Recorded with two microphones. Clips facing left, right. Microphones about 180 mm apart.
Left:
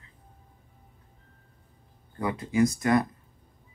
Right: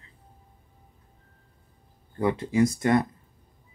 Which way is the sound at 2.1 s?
30° right (ahead or behind).